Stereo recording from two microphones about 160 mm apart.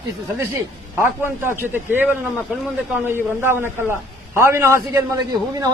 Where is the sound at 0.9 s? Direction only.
15° right (ahead or behind).